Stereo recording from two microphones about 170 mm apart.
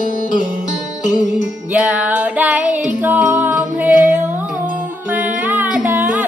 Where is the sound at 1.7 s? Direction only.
10° right (ahead or behind).